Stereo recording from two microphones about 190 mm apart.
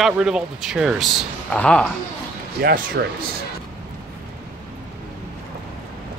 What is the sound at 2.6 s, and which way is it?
Speech, 50° right (ahead or behind).